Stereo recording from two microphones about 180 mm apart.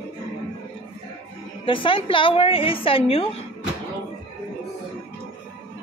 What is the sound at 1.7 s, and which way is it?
A woman's voice, 30° left (ahead or behind).